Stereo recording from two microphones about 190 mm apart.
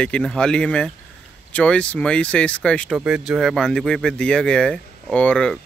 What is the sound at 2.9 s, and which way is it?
Speech, 5° right (ahead or behind).